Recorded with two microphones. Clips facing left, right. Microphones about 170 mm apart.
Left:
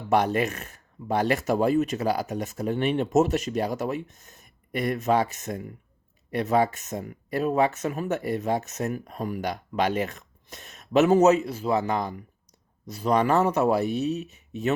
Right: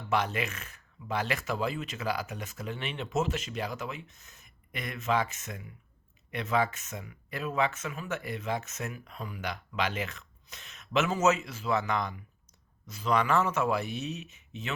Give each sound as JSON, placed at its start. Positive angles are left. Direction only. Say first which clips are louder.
{"t": 0.1, "sound": "speech", "louder": "left 8 dB", "side_deg": 45}